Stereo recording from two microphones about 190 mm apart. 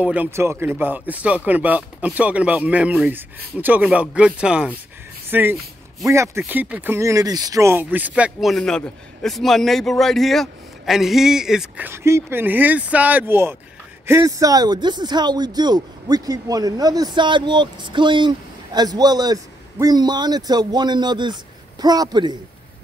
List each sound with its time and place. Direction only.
0.0 s speech: 10° right (ahead or behind)